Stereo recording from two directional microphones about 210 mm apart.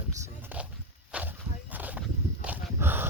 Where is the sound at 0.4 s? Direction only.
5° right (ahead or behind).